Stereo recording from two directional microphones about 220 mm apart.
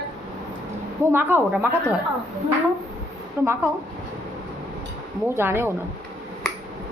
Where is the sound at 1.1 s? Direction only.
10° right (ahead or behind).